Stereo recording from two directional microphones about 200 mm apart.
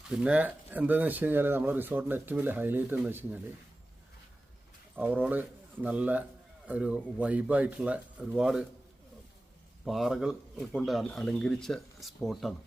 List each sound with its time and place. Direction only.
0.1 s speech: 5° right (ahead or behind)
4.9 s speech: 10° right (ahead or behind)
9.8 s speech: centre (ahead or behind)